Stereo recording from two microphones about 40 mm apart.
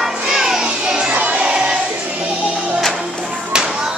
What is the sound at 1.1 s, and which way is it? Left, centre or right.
Music, right.